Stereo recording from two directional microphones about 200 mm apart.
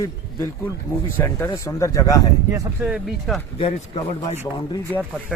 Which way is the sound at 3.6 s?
30° left (ahead or behind).